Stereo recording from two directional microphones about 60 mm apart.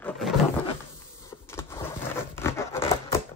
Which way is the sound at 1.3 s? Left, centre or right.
Left.